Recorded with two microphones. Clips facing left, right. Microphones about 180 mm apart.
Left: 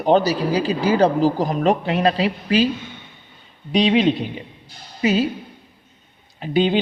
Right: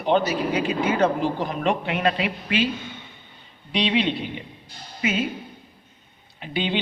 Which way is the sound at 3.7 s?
45° left (ahead or behind).